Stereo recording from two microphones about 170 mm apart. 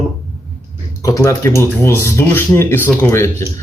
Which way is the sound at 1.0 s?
20° left (ahead or behind).